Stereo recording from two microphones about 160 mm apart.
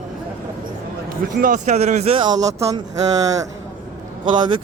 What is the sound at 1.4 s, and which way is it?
Speech, 55° right (ahead or behind).